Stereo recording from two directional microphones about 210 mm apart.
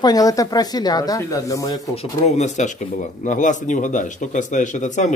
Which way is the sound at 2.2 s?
30° left (ahead or behind).